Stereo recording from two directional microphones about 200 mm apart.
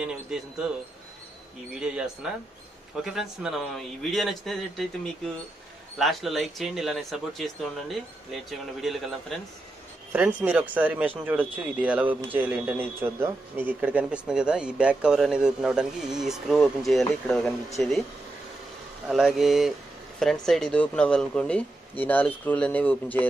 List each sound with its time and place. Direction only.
0.0 s a man's voice: centre (ahead or behind)
1.8 s a man's voice: 5° right (ahead or behind)
19.0 s a man's voice: centre (ahead or behind)